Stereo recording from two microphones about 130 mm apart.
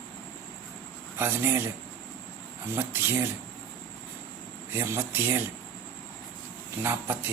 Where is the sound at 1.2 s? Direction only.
20° right (ahead or behind).